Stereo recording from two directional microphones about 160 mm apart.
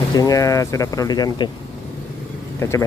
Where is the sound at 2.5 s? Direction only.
15° left (ahead or behind).